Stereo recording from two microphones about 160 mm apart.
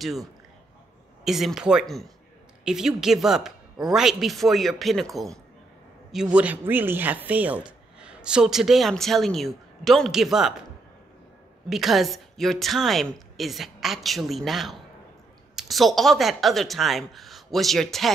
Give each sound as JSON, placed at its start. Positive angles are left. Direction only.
{"t": 1.2, "sound": "speech", "side_deg": 0}
{"t": 6.1, "sound": "speech", "side_deg": -5}
{"t": 11.7, "sound": "speech", "side_deg": 0}